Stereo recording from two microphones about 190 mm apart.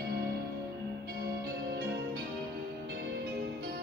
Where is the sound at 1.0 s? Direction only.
55° right (ahead or behind).